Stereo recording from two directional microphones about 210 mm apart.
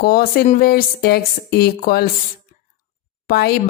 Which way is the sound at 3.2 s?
50° left (ahead or behind).